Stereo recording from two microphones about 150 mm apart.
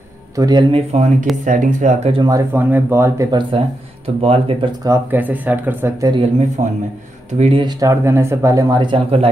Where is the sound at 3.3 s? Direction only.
35° right (ahead or behind).